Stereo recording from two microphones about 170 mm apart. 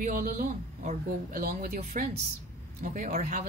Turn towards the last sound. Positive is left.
turn(degrees=-50)  # may be behind; listen again after turning